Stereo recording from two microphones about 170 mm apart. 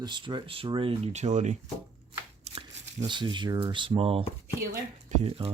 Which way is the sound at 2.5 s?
40° right (ahead or behind).